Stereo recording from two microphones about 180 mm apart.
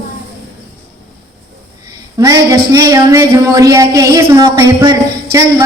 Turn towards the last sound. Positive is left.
turn(degrees=-20)  # may be behind; listen again after turning